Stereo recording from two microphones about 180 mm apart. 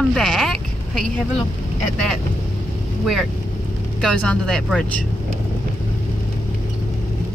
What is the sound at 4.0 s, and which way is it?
Speech, 5° left (ahead or behind).